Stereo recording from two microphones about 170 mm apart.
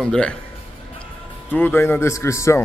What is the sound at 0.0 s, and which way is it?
Speech, 5° left (ahead or behind).